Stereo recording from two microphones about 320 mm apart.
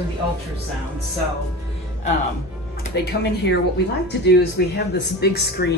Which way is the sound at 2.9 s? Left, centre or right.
Left.